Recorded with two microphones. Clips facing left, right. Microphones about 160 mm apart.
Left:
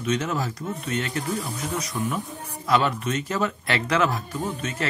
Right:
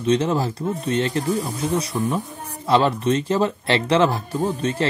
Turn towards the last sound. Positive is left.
turn(degrees=-30)  # may be behind; listen again after turning